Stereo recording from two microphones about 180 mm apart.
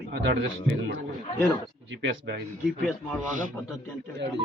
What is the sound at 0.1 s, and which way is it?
Speech, 70° right (ahead or behind).